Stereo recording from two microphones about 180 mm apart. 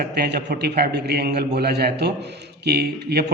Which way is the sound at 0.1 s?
65° right (ahead or behind).